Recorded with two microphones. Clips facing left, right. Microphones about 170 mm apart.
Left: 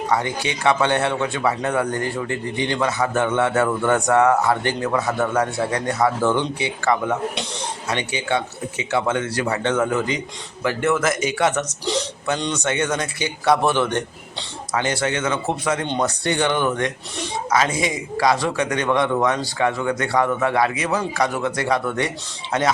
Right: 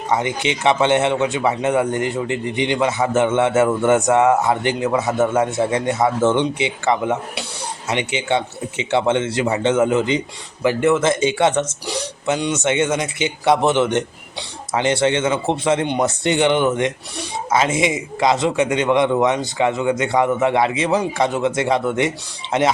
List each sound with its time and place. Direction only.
0.1 s a man's voice: 20° right (ahead or behind)
10.9 s speech: 25° right (ahead or behind)